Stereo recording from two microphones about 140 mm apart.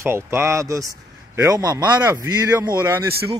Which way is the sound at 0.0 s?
20° right (ahead or behind).